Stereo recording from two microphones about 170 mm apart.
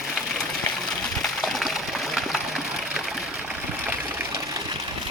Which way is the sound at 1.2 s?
Centre (ahead or behind).